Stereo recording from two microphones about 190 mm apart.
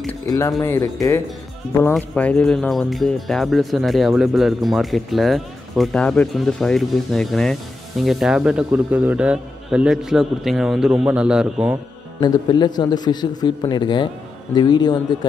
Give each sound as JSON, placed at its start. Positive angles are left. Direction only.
{"t": 0.3, "sound": "speech", "side_deg": 15}
{"t": 12.2, "sound": "a man's voice", "side_deg": 20}